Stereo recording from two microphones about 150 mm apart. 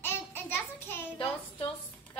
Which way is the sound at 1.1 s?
35° left (ahead or behind).